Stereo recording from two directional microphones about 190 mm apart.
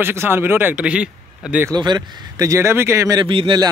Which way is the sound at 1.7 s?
20° right (ahead or behind).